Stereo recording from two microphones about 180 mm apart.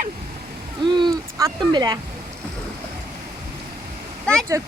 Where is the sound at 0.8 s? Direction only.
25° right (ahead or behind).